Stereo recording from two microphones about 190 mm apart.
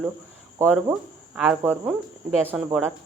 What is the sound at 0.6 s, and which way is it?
Speech, 10° right (ahead or behind).